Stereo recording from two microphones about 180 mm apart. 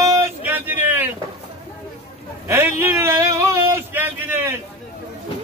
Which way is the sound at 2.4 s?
15° right (ahead or behind).